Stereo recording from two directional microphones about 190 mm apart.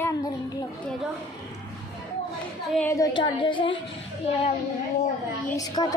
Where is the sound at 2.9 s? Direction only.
20° left (ahead or behind).